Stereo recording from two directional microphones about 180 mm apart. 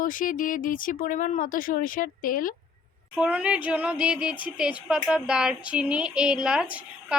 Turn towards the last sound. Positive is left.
turn(degrees=-5)  # may be behind; listen again after turning